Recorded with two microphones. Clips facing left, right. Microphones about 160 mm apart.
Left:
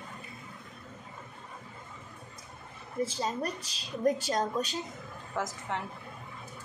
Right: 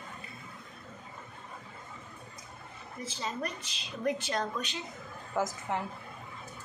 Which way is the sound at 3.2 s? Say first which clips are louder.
Left 3 dB; 40° left (ahead or behind).